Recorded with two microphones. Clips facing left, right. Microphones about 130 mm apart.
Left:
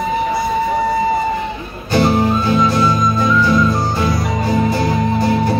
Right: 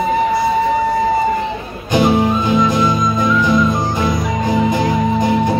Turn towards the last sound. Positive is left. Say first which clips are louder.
# right 1 dB
turn(degrees=-20)  # may be behind; listen again after turning